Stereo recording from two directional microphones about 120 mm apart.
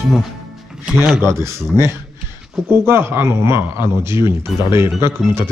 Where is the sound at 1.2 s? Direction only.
20° right (ahead or behind).